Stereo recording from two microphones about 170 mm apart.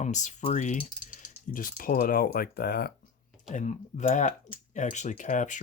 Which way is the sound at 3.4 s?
45° left (ahead or behind).